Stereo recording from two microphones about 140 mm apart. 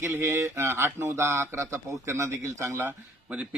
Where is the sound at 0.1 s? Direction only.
20° right (ahead or behind).